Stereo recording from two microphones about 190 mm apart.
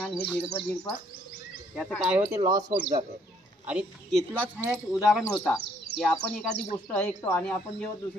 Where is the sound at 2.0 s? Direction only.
10° right (ahead or behind).